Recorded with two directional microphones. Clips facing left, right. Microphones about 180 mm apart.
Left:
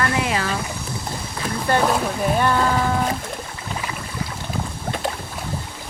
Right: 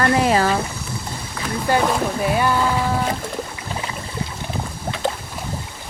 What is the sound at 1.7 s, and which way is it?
Speech, 5° right (ahead or behind).